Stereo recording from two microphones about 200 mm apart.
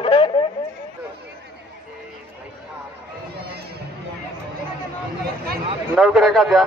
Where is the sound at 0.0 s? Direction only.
25° left (ahead or behind).